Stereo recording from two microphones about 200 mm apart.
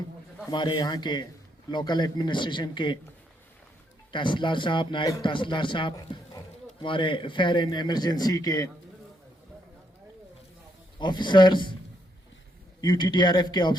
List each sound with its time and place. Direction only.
0.5 s a man's voice: 20° left (ahead or behind)
4.1 s a man's voice: 25° left (ahead or behind)
10.9 s a man's voice: 20° left (ahead or behind)
12.8 s a man's voice: 20° left (ahead or behind)